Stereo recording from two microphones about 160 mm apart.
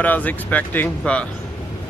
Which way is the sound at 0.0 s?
10° left (ahead or behind).